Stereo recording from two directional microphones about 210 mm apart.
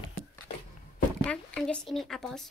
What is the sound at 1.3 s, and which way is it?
A woman's voice, 5° left (ahead or behind).